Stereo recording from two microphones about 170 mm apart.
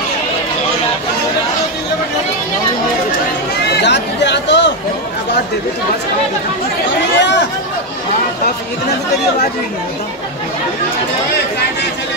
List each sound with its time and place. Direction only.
3.8 s chatter: 90° left
7.2 s chatter: 90° left